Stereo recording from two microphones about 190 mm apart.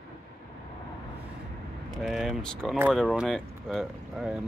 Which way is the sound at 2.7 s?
5° right (ahead or behind).